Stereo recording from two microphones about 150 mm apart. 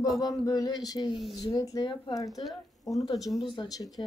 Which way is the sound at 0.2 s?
25° left (ahead or behind).